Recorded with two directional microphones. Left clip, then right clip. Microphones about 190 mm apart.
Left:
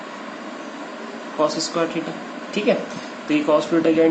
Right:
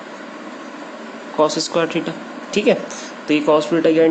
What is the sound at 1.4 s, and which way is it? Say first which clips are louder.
Speech: right 4 dB; 50° right (ahead or behind).